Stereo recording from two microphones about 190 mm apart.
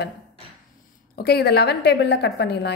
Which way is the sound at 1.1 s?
55° left (ahead or behind).